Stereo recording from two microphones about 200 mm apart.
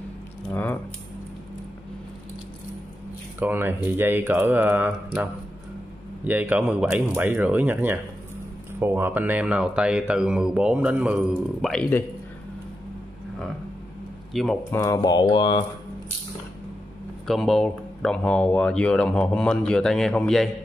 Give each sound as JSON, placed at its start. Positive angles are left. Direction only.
{"t": 0.5, "sound": "speech", "side_deg": 10}
{"t": 3.3, "sound": "speech", "side_deg": -10}
{"t": 14.3, "sound": "speech", "side_deg": 0}
{"t": 14.7, "sound": "speech", "side_deg": 15}
{"t": 17.3, "sound": "speech", "side_deg": 0}